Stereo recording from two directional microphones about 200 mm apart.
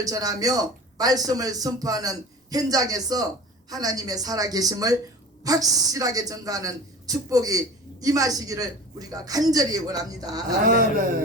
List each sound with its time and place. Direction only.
0.0 s a man's voice: 20° right (ahead or behind)